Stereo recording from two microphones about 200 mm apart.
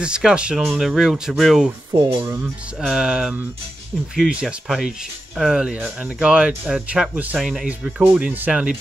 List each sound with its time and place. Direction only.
0.0 s speech: 5° right (ahead or behind)
1.9 s speech: 20° right (ahead or behind)
2.4 s speech: centre (ahead or behind)